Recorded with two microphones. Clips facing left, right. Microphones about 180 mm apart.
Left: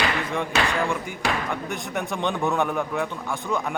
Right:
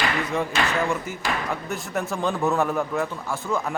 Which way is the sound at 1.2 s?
70° left (ahead or behind).